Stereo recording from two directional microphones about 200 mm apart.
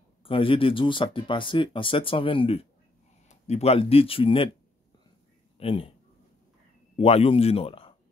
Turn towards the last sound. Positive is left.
turn(degrees=30)  # may be behind; listen again after turning